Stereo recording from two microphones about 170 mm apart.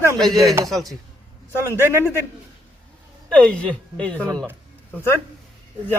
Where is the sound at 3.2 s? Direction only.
5° left (ahead or behind).